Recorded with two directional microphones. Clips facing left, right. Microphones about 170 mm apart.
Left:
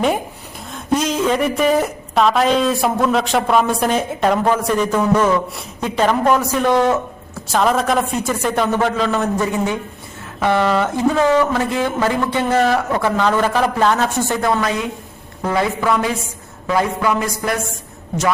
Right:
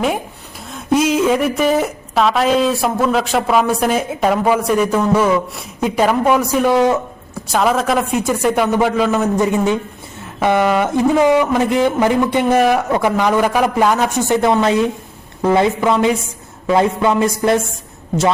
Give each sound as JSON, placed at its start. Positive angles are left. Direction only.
{"t": 0.7, "sound": "a woman's voice", "side_deg": -5}
{"t": 9.4, "sound": "a woman's voice", "side_deg": -20}